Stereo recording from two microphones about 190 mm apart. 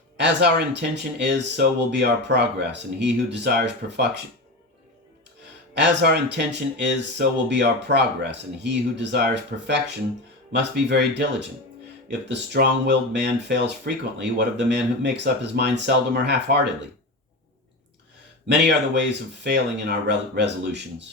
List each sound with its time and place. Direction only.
0.2 s speech: 65° right (ahead or behind)
5.7 s speech: 65° right (ahead or behind)
12.3 s speech: 65° right (ahead or behind)
18.4 s speech: 70° right (ahead or behind)
20.1 s speech: 65° right (ahead or behind)